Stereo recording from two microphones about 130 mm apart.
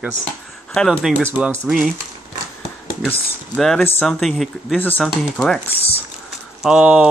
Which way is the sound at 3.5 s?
Centre (ahead or behind).